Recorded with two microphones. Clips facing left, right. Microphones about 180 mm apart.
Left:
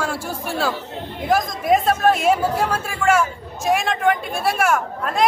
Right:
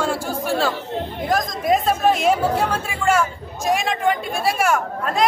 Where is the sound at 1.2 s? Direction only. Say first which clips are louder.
Left 2 dB; 5° left (ahead or behind).